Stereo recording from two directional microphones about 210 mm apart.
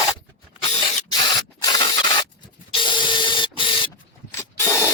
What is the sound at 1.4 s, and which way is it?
Rub, 20° left (ahead or behind).